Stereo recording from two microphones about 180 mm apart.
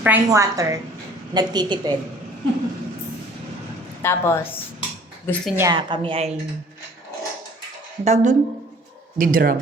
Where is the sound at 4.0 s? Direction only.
15° left (ahead or behind).